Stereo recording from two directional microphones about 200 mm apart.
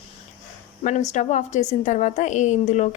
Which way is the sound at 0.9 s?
35° left (ahead or behind).